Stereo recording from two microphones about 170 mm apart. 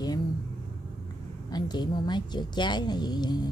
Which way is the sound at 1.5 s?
25° left (ahead or behind).